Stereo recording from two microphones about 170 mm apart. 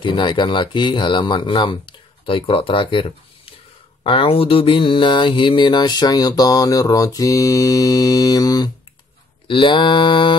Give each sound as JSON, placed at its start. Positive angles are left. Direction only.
{"t": 0.0, "sound": "mantra", "side_deg": 30}